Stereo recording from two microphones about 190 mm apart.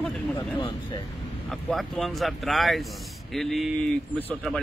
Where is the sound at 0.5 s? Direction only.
25° left (ahead or behind).